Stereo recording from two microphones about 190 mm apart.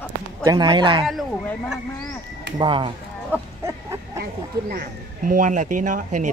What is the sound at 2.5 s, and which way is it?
Speech, 25° right (ahead or behind).